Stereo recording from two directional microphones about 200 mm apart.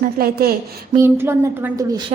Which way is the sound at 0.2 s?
45° right (ahead or behind).